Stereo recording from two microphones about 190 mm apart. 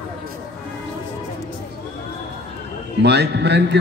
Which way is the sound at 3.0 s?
60° right (ahead or behind).